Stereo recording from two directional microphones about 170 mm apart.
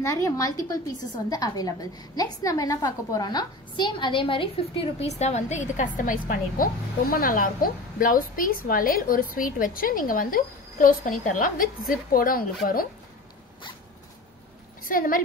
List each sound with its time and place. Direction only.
0.0 s a woman's voice: 20° left (ahead or behind); by 12.4 s 55° left (ahead or behind)
14.9 s a woman's voice: 55° left (ahead or behind)